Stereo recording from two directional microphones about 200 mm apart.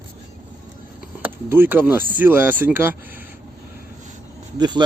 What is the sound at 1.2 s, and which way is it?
A man's voice, 10° right (ahead or behind).